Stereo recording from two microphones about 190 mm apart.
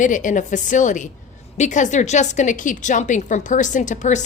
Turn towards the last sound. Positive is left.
turn(degrees=40)  # may be behind; listen again after turning